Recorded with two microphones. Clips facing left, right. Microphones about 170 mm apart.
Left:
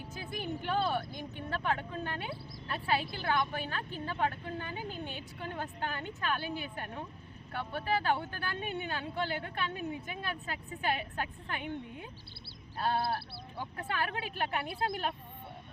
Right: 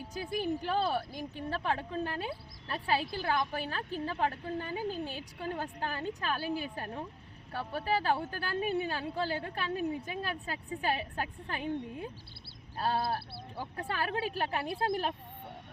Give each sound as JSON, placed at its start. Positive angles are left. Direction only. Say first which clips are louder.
{"t": 0.3, "sound": "speech", "louder": "right 3 dB", "side_deg": -35}
{"t": 13.6, "sound": "speech", "louder": "even", "side_deg": -35}